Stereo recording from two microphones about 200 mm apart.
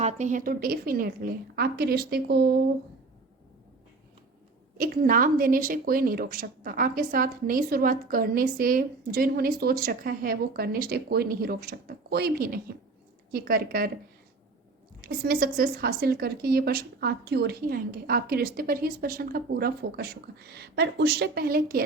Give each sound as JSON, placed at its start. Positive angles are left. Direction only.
{"t": 0.0, "sound": "a woman's voice", "side_deg": -35}
{"t": 4.8, "sound": "a woman's voice", "side_deg": -45}
{"t": 15.0, "sound": "a woman's voice", "side_deg": -50}